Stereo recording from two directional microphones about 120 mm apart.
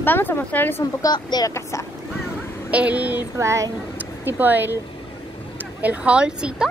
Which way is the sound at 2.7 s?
10° right (ahead or behind).